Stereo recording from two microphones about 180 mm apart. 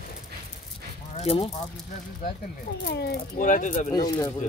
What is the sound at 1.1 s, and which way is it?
Speech, 35° left (ahead or behind).